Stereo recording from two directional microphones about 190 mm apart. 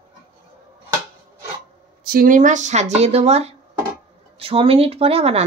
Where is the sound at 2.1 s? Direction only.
45° right (ahead or behind).